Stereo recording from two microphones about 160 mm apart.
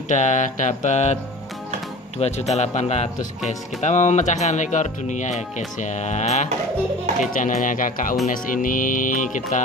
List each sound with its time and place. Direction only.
0.1 s speech: 50° left (ahead or behind)
2.1 s speech: 40° left (ahead or behind)